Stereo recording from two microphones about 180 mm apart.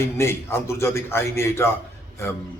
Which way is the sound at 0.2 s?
15° left (ahead or behind).